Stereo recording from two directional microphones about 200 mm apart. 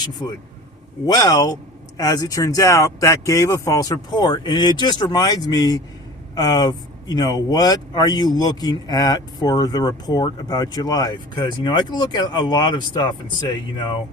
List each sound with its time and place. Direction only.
0.2 s speech: 20° left (ahead or behind)